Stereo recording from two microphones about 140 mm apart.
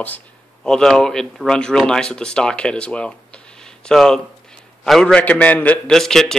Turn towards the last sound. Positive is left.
turn(degrees=5)  # may be behind; listen again after turning